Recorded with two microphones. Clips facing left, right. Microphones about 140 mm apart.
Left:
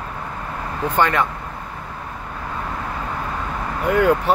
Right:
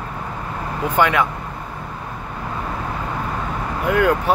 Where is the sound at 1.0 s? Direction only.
5° right (ahead or behind).